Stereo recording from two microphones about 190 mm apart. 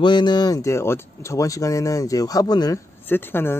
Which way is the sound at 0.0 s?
25° left (ahead or behind).